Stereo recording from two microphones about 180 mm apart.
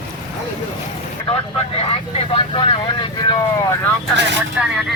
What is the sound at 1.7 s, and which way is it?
Speech, 30° left (ahead or behind).